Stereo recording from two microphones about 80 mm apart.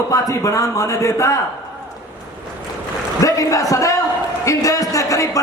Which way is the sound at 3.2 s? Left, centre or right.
Left.